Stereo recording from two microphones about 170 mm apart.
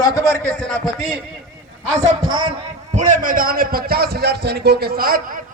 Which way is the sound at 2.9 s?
45° right (ahead or behind).